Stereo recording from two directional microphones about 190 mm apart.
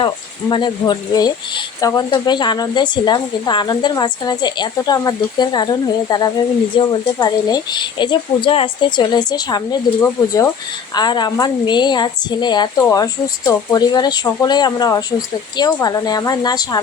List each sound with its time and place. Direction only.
0.0 s speech: 25° left (ahead or behind)